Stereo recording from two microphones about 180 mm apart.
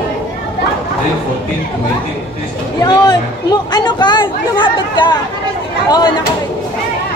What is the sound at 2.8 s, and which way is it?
Speech, 20° left (ahead or behind).